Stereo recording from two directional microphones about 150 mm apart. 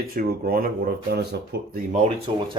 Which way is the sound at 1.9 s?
45° right (ahead or behind).